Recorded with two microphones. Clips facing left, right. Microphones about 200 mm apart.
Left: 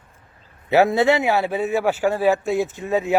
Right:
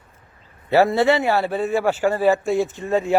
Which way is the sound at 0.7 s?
20° left (ahead or behind).